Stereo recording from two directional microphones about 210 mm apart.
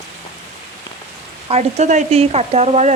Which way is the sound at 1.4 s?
30° right (ahead or behind).